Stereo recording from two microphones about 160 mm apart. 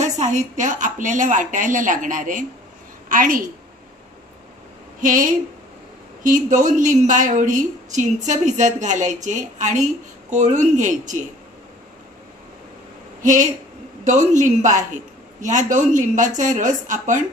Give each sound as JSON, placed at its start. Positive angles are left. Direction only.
{"t": 0.0, "sound": "a woman's voice", "side_deg": -50}
{"t": 5.0, "sound": "a woman's voice", "side_deg": -60}
{"t": 13.2, "sound": "a woman's voice", "side_deg": -55}